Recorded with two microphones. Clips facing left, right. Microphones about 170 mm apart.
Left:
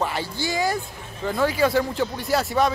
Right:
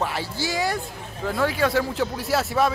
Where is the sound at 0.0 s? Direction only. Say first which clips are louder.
Left 1 dB; centre (ahead or behind).